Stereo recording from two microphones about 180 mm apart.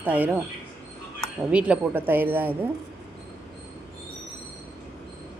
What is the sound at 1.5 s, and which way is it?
Speech, 5° right (ahead or behind).